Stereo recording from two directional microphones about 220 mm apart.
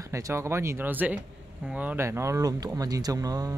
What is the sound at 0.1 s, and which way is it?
Speech, 15° right (ahead or behind).